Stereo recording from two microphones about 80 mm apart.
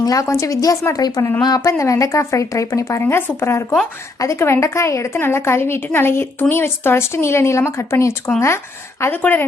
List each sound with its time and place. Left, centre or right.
0.0 s a woman's voice: left
1.0 s a woman's voice: left
1.8 s speech: left
3.0 s a woman's voice: left